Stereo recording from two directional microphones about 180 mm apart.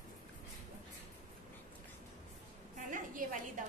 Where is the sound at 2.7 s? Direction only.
45° right (ahead or behind).